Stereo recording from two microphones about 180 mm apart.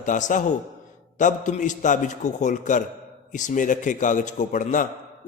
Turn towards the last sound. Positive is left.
turn(degrees=45)  # may be behind; listen again after turning